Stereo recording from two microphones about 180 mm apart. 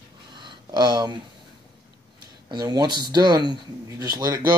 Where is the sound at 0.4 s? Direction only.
25° right (ahead or behind).